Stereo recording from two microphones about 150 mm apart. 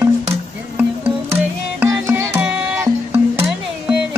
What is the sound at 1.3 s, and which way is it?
Music, 15° right (ahead or behind).